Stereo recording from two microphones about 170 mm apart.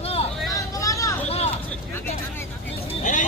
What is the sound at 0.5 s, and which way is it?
Vehicle, 20° left (ahead or behind).